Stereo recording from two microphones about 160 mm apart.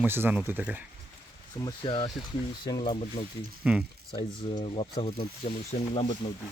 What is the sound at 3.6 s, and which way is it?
Speech, 5° right (ahead or behind).